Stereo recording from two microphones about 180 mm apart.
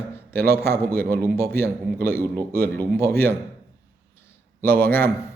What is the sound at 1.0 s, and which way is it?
Speech, 10° left (ahead or behind).